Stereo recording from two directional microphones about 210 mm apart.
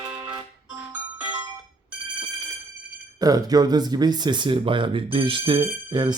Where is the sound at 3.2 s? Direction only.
20° right (ahead or behind).